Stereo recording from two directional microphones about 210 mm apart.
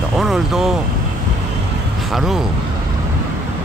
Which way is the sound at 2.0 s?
Centre (ahead or behind).